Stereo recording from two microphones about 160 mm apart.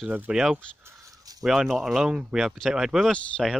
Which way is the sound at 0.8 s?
20° right (ahead or behind).